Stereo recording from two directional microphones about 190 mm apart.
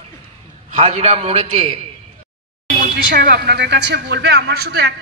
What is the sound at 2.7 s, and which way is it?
Speech, 55° right (ahead or behind).